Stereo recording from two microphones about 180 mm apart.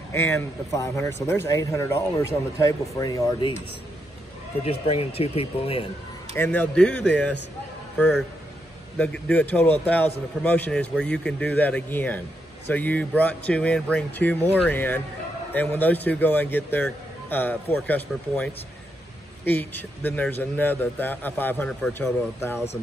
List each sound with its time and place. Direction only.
0.1 s speech: 15° left (ahead or behind)
4.6 s speech: 35° left (ahead or behind)
6.3 s speech: 10° left (ahead or behind)